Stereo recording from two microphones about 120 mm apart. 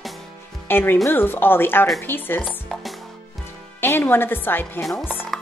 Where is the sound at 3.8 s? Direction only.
20° left (ahead or behind).